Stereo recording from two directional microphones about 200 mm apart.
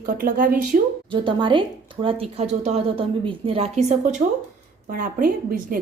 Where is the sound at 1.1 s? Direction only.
25° right (ahead or behind).